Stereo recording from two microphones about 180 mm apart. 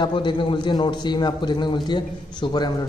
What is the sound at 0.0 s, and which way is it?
A man's voice, 25° left (ahead or behind).